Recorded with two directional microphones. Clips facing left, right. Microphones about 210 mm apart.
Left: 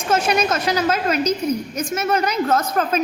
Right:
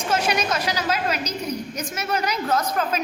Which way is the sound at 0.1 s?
50° left (ahead or behind).